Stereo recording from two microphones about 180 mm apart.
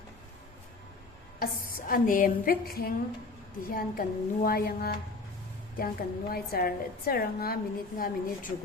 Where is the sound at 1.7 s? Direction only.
50° left (ahead or behind).